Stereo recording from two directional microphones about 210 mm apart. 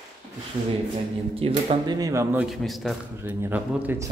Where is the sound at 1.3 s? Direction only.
25° right (ahead or behind).